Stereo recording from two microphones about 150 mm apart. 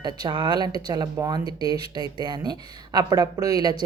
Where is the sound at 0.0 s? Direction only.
30° right (ahead or behind).